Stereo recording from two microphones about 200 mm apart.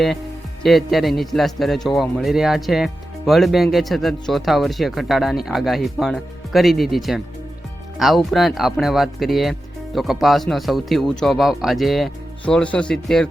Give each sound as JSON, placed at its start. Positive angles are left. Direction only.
{"t": 0.6, "sound": "speech", "side_deg": 0}